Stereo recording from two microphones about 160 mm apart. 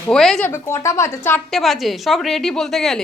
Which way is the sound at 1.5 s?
Centre (ahead or behind).